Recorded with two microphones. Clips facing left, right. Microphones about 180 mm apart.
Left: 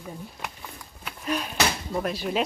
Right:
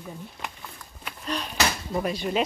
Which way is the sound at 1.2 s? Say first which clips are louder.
Left 1 dB; 5° left (ahead or behind).